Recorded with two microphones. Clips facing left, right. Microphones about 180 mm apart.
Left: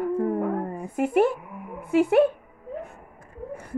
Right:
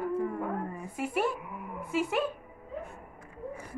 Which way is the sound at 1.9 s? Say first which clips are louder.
Left 11 dB; 60° left (ahead or behind).